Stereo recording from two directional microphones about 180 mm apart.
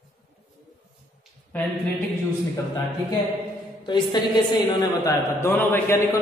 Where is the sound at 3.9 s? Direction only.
25° left (ahead or behind).